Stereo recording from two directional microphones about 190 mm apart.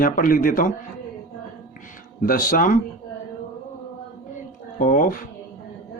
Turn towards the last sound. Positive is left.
turn(degrees=45)  # may be behind; listen again after turning